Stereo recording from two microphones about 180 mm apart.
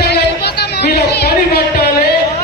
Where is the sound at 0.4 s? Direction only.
65° left (ahead or behind).